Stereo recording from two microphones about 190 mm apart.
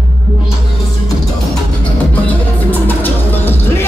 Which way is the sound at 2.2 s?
10° left (ahead or behind).